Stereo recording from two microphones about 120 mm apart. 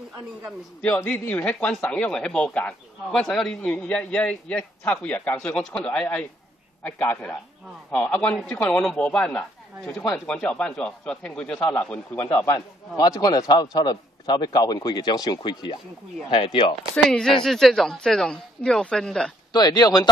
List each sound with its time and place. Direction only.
0.8 s a man's voice: 15° left (ahead or behind); by 16.7 s 45° left (ahead or behind)
17.0 s speech: 5° left (ahead or behind)
19.5 s a man's voice: 35° left (ahead or behind)